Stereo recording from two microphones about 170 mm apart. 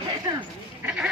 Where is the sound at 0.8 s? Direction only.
5° right (ahead or behind).